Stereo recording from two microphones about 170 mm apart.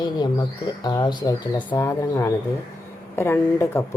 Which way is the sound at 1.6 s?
10° left (ahead or behind).